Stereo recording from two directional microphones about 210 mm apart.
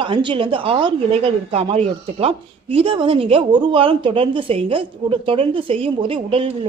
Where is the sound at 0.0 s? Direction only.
25° right (ahead or behind).